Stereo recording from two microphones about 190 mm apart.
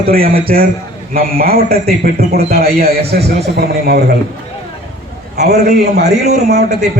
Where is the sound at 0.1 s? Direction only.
50° right (ahead or behind).